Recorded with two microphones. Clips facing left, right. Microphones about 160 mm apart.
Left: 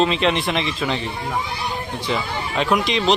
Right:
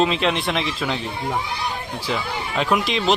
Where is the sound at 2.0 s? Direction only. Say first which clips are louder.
Left 1 dB; centre (ahead or behind).